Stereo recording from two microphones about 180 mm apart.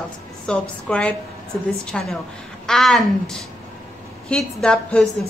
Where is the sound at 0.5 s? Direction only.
5° left (ahead or behind).